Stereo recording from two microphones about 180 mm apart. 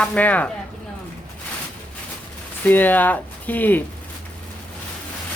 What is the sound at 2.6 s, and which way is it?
Speech, 10° left (ahead or behind).